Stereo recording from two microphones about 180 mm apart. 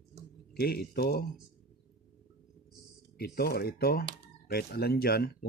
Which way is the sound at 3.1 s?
60° left (ahead or behind).